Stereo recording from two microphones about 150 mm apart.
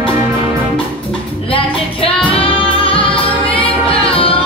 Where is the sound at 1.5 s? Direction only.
35° left (ahead or behind).